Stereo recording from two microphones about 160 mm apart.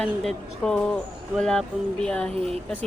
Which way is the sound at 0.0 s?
5° left (ahead or behind).